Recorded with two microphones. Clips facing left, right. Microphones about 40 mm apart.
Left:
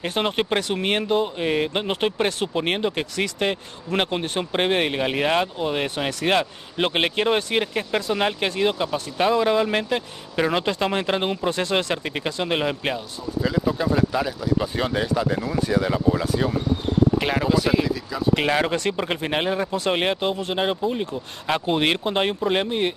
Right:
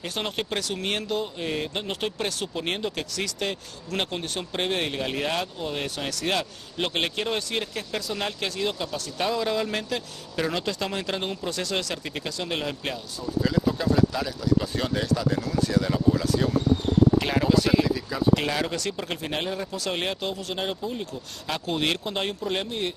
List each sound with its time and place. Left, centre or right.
0.0 s speech: left
13.4 s speech: centre
18.3 s speech: left